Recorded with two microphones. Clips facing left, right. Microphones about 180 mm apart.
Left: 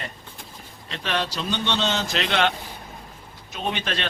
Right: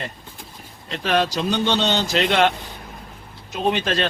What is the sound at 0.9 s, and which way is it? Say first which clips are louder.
A man's voice: right 7 dB; 40° right (ahead or behind).